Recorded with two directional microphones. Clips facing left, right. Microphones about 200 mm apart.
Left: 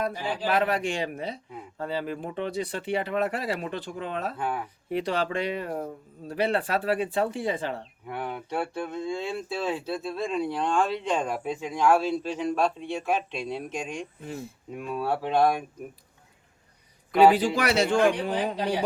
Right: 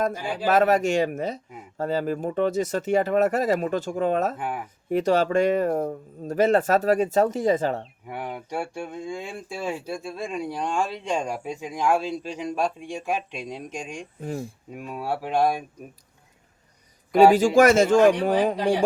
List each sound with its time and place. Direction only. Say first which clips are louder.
0.4 s speech: right 6 dB; 45° right (ahead or behind)
4.4 s speech: even; 15° right (ahead or behind)
4.9 s speech: right 7 dB; 45° right (ahead or behind)
8.0 s speech: even; 10° right (ahead or behind)
14.2 s speech: right 6 dB; 45° right (ahead or behind)
14.8 s speech: left 1 dB; 10° right (ahead or behind)
17.2 s speech: right 4 dB; 45° right (ahead or behind)